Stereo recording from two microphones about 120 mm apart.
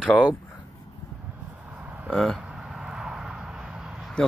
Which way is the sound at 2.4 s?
5° right (ahead or behind).